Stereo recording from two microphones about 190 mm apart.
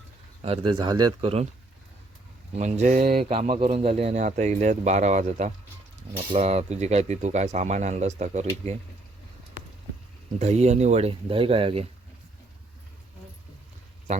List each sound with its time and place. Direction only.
0.4 s speech: 25° right (ahead or behind)
2.6 s speech: 35° right (ahead or behind)
10.3 s speech: 35° right (ahead or behind)